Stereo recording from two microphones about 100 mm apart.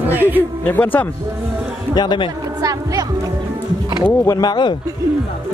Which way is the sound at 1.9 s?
50° left (ahead or behind).